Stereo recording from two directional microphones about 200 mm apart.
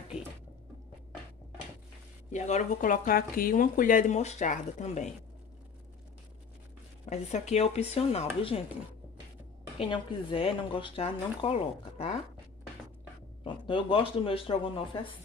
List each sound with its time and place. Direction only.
2.3 s speech: 35° left (ahead or behind)
7.1 s speech: 35° left (ahead or behind)
9.8 s speech: 25° left (ahead or behind)
13.4 s speech: 25° left (ahead or behind)